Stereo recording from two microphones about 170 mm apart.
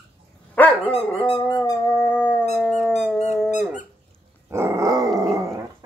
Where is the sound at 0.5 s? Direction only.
10° left (ahead or behind).